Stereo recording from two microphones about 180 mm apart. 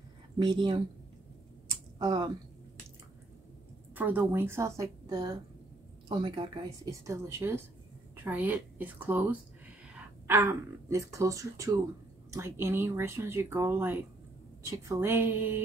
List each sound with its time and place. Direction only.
0.4 s speech: 25° right (ahead or behind)
2.0 s speech: 25° right (ahead or behind)
3.9 s speech: 10° right (ahead or behind)